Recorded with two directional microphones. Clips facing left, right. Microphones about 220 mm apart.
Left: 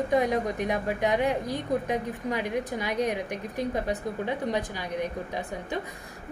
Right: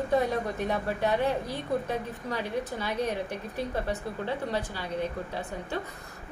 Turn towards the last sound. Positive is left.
turn(degrees=15)  # may be behind; listen again after turning